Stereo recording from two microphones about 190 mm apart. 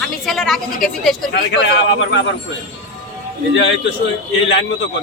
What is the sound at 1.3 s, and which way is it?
Speech, 65° left (ahead or behind).